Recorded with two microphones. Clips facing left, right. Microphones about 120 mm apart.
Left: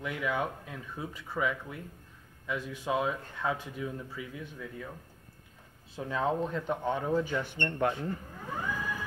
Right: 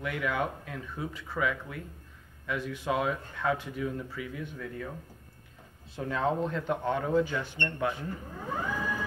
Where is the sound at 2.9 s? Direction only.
5° left (ahead or behind).